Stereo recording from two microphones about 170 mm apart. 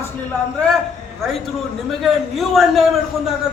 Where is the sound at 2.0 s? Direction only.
Centre (ahead or behind).